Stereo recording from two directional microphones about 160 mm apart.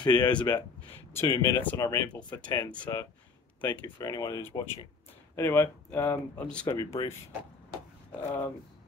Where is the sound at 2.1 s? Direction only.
10° left (ahead or behind).